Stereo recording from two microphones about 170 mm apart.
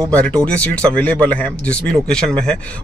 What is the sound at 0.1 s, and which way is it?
Speech, 5° left (ahead or behind).